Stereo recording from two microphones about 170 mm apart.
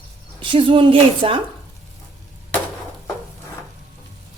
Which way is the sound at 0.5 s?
30° right (ahead or behind).